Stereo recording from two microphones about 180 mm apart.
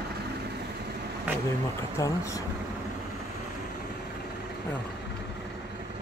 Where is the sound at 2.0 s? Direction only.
15° left (ahead or behind).